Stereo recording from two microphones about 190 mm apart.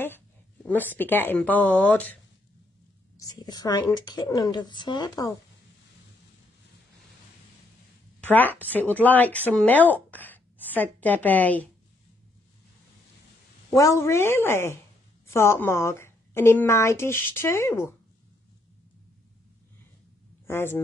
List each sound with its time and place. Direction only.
0.7 s a woman's voice: 10° left (ahead or behind)
3.2 s a woman's voice: 20° left (ahead or behind)
8.2 s a woman's voice: 10° left (ahead or behind)
13.7 s a woman's voice: 15° left (ahead or behind)
20.4 s speech: 10° left (ahead or behind)